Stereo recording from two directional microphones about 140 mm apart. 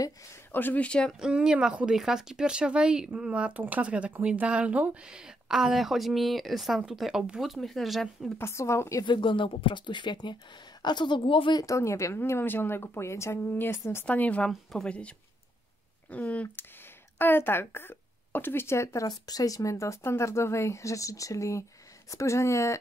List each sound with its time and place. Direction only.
0.0 s speech: 15° left (ahead or behind)
1.2 s speech: 5° right (ahead or behind)
8.4 s a woman's voice: 20° left (ahead or behind)
9.0 s speech: 35° left (ahead or behind)
11.6 s a woman's voice: 20° left (ahead or behind)